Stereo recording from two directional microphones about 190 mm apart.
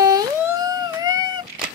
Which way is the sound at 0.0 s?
20° right (ahead or behind).